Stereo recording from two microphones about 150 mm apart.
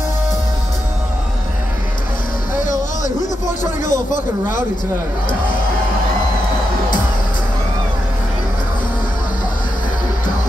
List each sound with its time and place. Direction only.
3.8 s speech: 60° left (ahead or behind)